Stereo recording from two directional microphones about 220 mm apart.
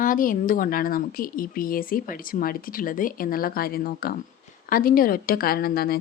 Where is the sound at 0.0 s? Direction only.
40° left (ahead or behind).